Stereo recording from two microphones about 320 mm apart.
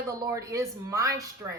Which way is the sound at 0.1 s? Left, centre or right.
Centre.